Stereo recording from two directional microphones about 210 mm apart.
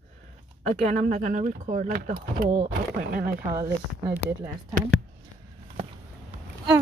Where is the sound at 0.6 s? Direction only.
40° right (ahead or behind).